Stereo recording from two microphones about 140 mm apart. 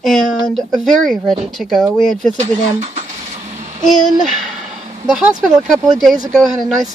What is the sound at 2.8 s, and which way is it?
Printer, 55° right (ahead or behind).